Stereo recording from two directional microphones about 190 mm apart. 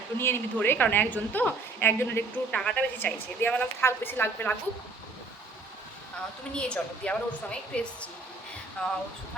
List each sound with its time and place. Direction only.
0.2 s a woman's voice: 10° left (ahead or behind)
6.5 s a woman's voice: 5° left (ahead or behind)